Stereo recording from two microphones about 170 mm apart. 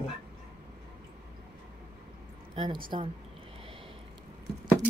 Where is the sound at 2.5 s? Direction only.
30° right (ahead or behind).